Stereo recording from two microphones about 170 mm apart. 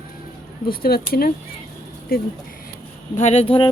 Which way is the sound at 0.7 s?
60° left (ahead or behind).